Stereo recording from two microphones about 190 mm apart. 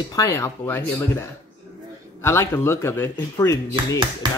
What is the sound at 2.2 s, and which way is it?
Speech, 15° left (ahead or behind).